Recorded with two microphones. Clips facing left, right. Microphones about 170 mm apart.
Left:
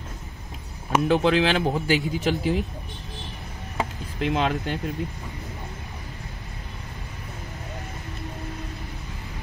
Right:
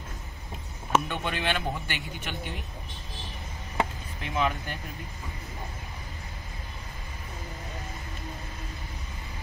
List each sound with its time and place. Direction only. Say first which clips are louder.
1.0 s speech: left 11 dB; 90° left
4.2 s speech: left 5 dB; 80° left